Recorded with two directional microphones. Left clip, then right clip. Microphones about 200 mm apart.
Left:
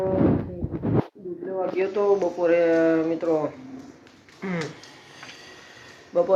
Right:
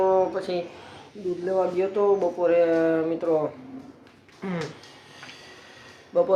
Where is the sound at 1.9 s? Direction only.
Centre (ahead or behind).